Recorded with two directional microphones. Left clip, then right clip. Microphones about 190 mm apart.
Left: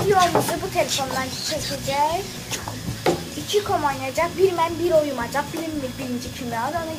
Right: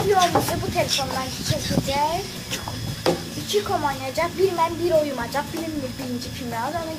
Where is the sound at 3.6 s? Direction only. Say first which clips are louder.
Left 2 dB; 5° right (ahead or behind).